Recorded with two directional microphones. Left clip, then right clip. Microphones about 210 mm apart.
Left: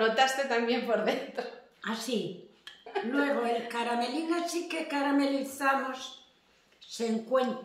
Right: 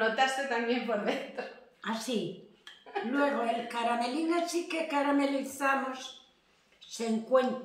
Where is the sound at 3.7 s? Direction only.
5° left (ahead or behind).